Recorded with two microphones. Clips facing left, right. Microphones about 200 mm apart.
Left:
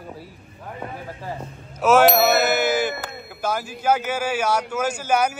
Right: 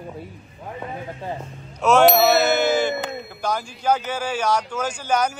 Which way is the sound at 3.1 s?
5° left (ahead or behind).